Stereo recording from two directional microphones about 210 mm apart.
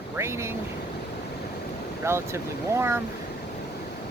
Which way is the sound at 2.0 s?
10° right (ahead or behind).